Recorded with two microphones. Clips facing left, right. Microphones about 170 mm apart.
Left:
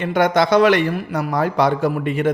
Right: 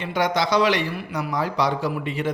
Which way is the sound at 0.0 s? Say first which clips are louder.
Left 6 dB; 55° left (ahead or behind).